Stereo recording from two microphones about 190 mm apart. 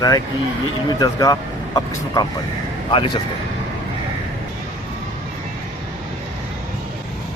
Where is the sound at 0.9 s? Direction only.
20° left (ahead or behind).